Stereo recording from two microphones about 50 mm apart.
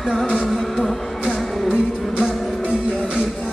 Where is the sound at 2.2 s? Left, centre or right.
Centre.